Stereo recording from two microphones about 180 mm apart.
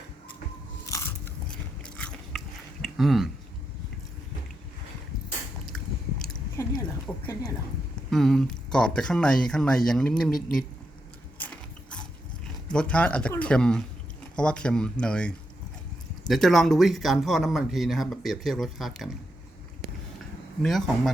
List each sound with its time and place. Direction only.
0.9 s biting: 15° left (ahead or behind)
1.5 s biting: 5° left (ahead or behind)
2.8 s a sound: centre (ahead or behind)
6.6 s a sound: 15° left (ahead or behind)
7.1 s a sound: 5° left (ahead or behind)
8.1 s speech: centre (ahead or behind)
11.3 s gears: 5° left (ahead or behind)
12.6 s speech: 5° left (ahead or behind)
16.3 s speech: centre (ahead or behind)
20.6 s speech: centre (ahead or behind)